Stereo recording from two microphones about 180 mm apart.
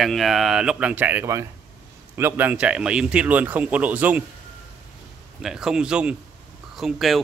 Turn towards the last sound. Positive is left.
turn(degrees=0)  # may be behind; listen again after turning